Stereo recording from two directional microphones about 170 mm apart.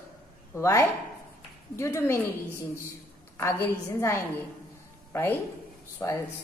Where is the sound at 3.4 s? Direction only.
10° left (ahead or behind).